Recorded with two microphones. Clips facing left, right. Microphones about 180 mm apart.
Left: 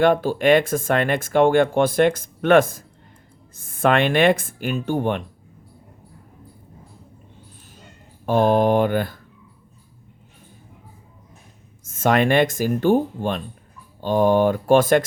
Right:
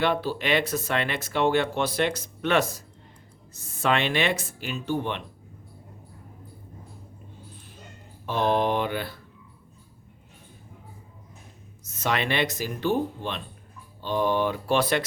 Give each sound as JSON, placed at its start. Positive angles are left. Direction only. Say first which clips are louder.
{"t": 0.0, "sound": "speech", "louder": "left 8 dB", "side_deg": 45}
{"t": 8.3, "sound": "speech", "louder": "left 7 dB", "side_deg": 45}
{"t": 11.9, "sound": "speech", "louder": "left 9 dB", "side_deg": 50}